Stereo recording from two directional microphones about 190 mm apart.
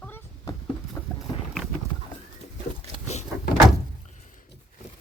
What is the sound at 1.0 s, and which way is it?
Boat, 15° left (ahead or behind).